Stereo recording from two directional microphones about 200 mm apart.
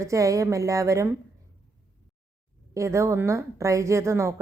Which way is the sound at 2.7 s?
15° right (ahead or behind).